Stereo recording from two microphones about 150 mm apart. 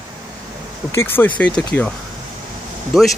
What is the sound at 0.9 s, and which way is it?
Speech, 15° left (ahead or behind).